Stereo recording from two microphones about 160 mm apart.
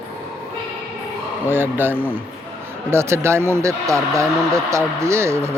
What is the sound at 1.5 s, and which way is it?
Speech, 15° right (ahead or behind).